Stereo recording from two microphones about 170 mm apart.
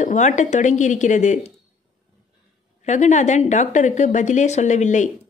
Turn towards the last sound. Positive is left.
turn(degrees=45)  # may be behind; listen again after turning